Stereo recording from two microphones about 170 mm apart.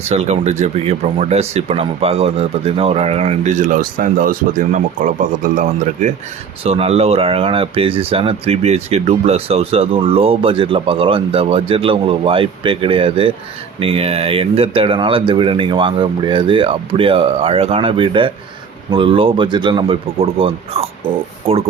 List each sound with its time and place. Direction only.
0.0 s speech: 40° right (ahead or behind)
6.7 s speech: 35° right (ahead or behind)